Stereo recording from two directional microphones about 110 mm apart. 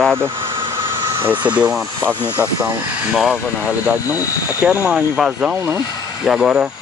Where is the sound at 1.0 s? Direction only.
25° right (ahead or behind).